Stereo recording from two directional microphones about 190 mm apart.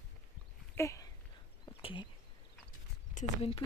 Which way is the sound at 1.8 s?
30° left (ahead or behind).